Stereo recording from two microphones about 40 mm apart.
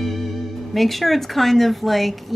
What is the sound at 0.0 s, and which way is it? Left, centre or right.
Speech, centre.